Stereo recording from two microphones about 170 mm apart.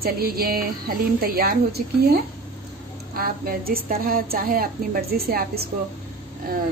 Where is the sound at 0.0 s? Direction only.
65° right (ahead or behind).